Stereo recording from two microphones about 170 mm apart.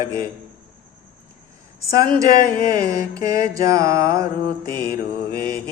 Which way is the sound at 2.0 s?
20° right (ahead or behind).